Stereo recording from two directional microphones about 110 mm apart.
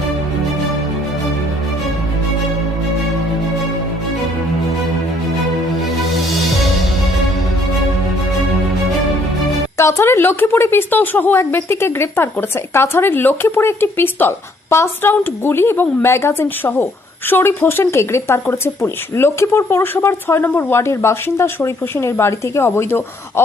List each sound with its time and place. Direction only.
9.7 s a woman's voice: 25° left (ahead or behind)